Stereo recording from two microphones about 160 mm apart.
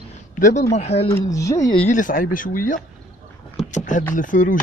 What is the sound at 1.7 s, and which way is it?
Speech, 50° left (ahead or behind).